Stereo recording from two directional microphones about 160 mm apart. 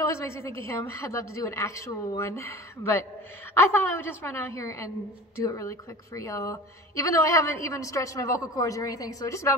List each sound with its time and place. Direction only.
0.1 s a woman's voice: 20° left (ahead or behind)